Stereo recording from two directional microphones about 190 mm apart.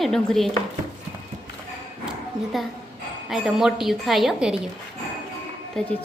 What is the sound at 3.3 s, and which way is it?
A woman's voice, centre (ahead or behind).